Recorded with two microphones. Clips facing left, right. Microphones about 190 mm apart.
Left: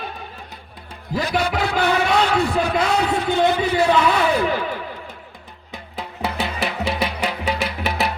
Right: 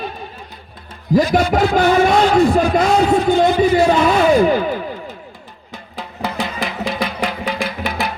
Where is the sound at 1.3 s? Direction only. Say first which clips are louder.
Right 7 dB; 45° right (ahead or behind).